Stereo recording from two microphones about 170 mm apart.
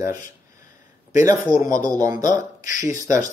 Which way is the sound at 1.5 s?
20° right (ahead or behind).